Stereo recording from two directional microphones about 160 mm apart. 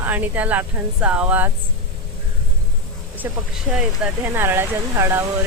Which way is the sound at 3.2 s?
15° right (ahead or behind).